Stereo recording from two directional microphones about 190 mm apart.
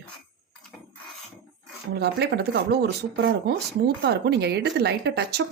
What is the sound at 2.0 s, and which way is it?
A woman's voice, 60° right (ahead or behind).